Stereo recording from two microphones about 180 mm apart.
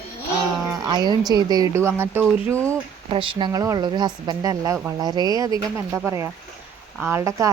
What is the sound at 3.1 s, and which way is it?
Speech, 30° right (ahead or behind).